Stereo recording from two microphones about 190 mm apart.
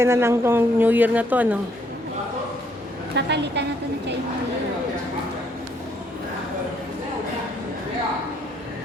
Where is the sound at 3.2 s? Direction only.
65° right (ahead or behind).